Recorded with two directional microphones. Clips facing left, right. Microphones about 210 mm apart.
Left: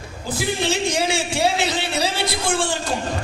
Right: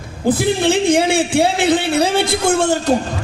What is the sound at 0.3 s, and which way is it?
A man's voice, 55° right (ahead or behind).